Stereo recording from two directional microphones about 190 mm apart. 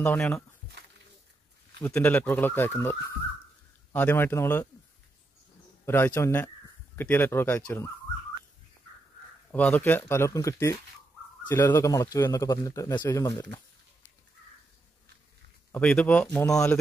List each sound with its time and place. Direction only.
0.0 s a man's voice: 10° left (ahead or behind)
1.8 s a man's voice: 10° left (ahead or behind)
5.9 s a man's voice: 10° left (ahead or behind)
9.5 s a man's voice: 10° left (ahead or behind)
15.7 s a man's voice: 5° left (ahead or behind)